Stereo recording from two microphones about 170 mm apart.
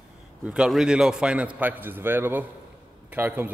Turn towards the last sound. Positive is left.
turn(degrees=-10)  # may be behind; listen again after turning